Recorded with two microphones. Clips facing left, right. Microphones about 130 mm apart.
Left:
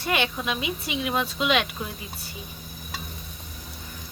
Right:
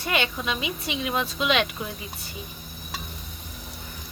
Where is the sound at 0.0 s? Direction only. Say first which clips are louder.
Left 1 dB; centre (ahead or behind).